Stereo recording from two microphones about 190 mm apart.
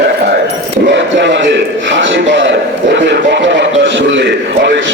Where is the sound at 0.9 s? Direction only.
70° right (ahead or behind).